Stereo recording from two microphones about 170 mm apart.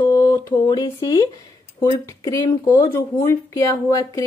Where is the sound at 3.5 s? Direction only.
20° left (ahead or behind).